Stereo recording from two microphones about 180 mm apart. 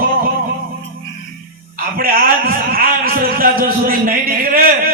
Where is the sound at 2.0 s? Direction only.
55° right (ahead or behind).